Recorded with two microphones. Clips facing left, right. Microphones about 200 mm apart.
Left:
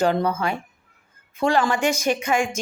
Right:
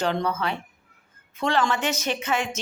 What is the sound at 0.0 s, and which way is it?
A woman's voice, 10° left (ahead or behind).